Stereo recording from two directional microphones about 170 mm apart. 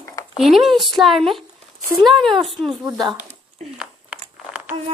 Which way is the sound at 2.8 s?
25° right (ahead or behind).